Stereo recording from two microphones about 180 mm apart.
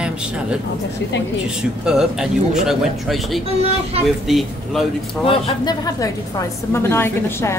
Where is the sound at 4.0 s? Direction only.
35° right (ahead or behind).